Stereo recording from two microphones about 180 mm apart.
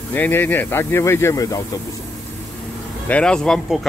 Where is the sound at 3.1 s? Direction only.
5° left (ahead or behind).